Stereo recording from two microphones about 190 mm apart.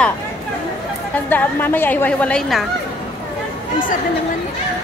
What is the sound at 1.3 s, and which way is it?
A woman's voice, 10° left (ahead or behind).